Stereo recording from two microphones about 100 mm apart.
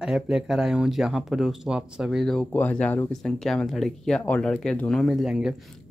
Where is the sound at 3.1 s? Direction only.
5° left (ahead or behind).